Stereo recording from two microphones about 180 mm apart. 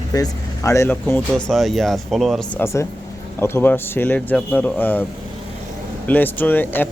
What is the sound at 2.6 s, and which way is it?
Speech, 15° left (ahead or behind).